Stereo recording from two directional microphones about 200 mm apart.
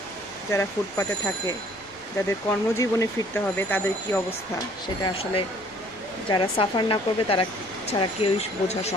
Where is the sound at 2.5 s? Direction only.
15° left (ahead or behind).